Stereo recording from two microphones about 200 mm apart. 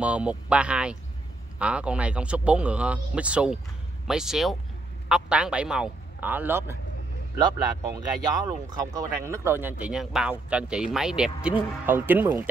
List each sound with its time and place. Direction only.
0.0 s a man's voice: 5° right (ahead or behind)